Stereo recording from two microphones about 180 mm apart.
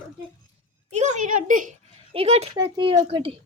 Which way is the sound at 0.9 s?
40° right (ahead or behind).